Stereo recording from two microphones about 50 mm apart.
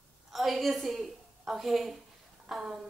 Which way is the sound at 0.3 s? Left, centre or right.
Centre.